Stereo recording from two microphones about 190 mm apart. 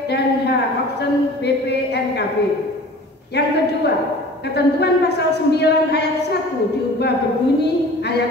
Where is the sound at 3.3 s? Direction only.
60° left (ahead or behind).